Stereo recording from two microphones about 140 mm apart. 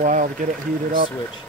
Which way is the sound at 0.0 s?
65° right (ahead or behind).